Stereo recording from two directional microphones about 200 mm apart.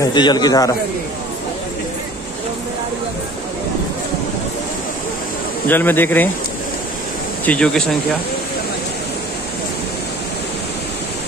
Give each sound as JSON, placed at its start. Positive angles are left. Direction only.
{"t": 0.0, "sound": "a man's voice", "side_deg": 20}
{"t": 5.7, "sound": "speech", "side_deg": 10}
{"t": 7.4, "sound": "speech", "side_deg": 5}